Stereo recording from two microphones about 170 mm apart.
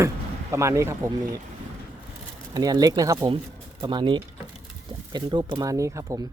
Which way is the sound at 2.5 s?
20° right (ahead or behind).